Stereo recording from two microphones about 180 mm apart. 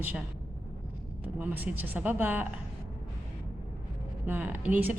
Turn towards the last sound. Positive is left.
turn(degrees=-10)  # may be behind; listen again after turning